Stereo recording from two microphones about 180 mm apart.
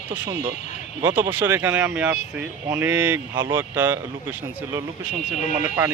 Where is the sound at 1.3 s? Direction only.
10° right (ahead or behind).